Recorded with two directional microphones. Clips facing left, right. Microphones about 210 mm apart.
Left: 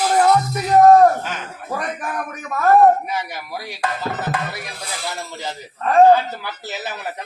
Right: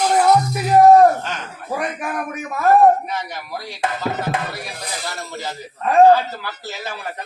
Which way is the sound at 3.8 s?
20° right (ahead or behind).